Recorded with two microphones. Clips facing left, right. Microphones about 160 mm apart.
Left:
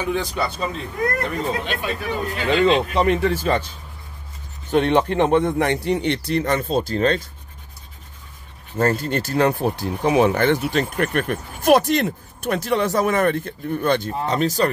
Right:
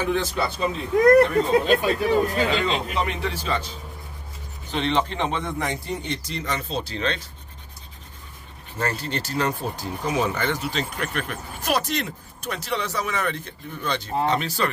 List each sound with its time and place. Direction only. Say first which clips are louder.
0.0 s a man's voice: left 1 dB; centre (ahead or behind)
1.7 s speech: right 6 dB; 35° right (ahead or behind)
2.6 s speech: left 8 dB; 40° left (ahead or behind)
4.6 s a man's voice: left 6 dB; 55° left (ahead or behind)
8.7 s speech: left 7 dB; 50° left (ahead or behind)
14.2 s speech: left 2 dB; 40° left (ahead or behind)